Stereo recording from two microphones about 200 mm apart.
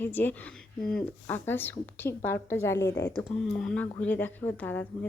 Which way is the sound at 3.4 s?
Centre (ahead or behind).